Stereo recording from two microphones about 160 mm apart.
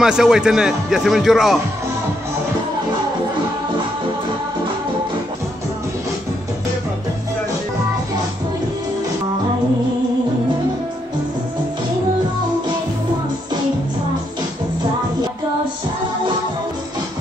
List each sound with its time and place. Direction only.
0.0 s speech: 5° right (ahead or behind)